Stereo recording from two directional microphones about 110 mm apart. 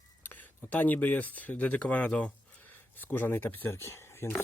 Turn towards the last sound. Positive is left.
turn(degrees=25)  # may be behind; listen again after turning